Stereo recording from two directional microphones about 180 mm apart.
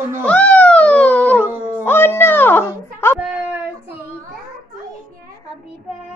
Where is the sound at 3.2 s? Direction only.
5° right (ahead or behind).